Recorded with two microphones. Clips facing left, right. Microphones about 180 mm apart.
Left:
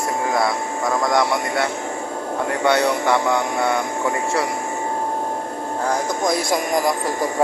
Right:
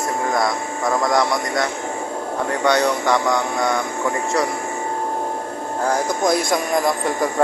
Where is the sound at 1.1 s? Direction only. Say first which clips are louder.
Even; centre (ahead or behind).